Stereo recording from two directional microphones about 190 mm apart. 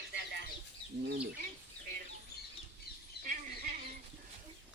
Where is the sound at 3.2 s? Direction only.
45° right (ahead or behind).